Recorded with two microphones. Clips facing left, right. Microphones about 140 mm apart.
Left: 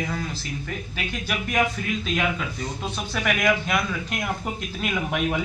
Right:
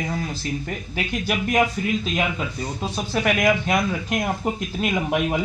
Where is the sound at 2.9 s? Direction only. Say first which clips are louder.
Right 5 dB; 35° right (ahead or behind).